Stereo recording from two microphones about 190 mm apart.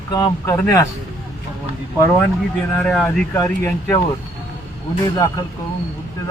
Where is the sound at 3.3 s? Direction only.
15° left (ahead or behind).